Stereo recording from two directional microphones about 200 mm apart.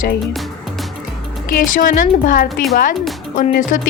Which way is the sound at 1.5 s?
45° left (ahead or behind).